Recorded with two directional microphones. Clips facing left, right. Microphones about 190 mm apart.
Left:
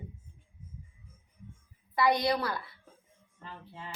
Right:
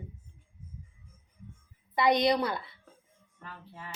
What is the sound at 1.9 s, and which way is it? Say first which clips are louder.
Speech: right 2 dB; 20° right (ahead or behind).